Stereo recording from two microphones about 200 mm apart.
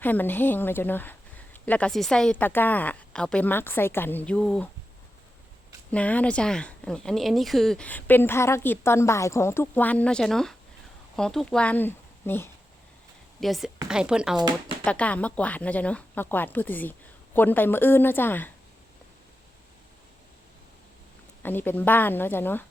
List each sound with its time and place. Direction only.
0.0 s a woman's voice: 10° left (ahead or behind)
5.9 s a woman's voice: 5° left (ahead or behind)
13.4 s speech: centre (ahead or behind)
14.3 s speech: 20° right (ahead or behind)
14.8 s a woman's voice: 5° left (ahead or behind)
21.4 s a woman's voice: 10° left (ahead or behind)